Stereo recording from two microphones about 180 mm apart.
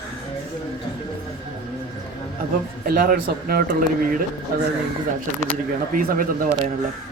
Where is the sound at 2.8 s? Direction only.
50° right (ahead or behind).